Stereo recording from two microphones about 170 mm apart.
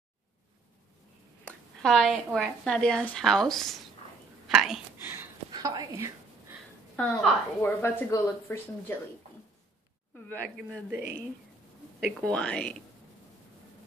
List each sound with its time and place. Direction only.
1.4 s a woman's voice: 5° left (ahead or behind)
4.6 s whispering: 5° right (ahead or behind)
5.5 s speech: 25° right (ahead or behind)
7.0 s a woman's voice: 10° left (ahead or behind)
10.1 s a woman's voice: 10° left (ahead or behind)
12.0 s speech: 5° left (ahead or behind)